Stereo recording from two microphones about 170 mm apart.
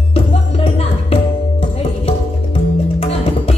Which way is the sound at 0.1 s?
35° left (ahead or behind).